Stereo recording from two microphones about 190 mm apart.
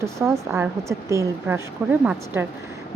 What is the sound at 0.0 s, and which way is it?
Speech, 15° right (ahead or behind).